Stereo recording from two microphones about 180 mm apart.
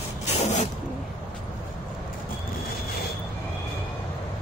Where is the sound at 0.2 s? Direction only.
40° left (ahead or behind).